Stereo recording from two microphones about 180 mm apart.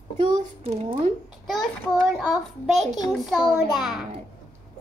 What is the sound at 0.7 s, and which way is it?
Speech, 35° right (ahead or behind).